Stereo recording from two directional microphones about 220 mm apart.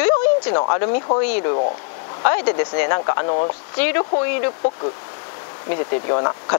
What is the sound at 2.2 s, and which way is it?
Speech, 20° left (ahead or behind).